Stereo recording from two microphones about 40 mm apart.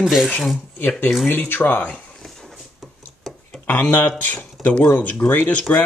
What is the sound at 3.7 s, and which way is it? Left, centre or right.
Speech, left.